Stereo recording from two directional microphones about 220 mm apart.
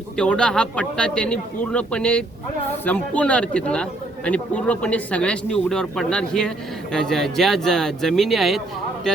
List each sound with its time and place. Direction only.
0.2 s speech: 5° left (ahead or behind)